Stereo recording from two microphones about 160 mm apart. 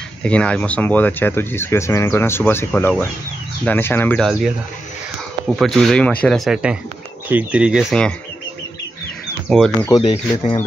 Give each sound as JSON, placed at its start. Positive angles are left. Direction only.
{"t": 0.2, "sound": "speech", "side_deg": 5}
{"t": 4.3, "sound": "speech", "side_deg": 0}
{"t": 9.5, "sound": "speech", "side_deg": 5}
{"t": 9.8, "sound": "speech", "side_deg": 25}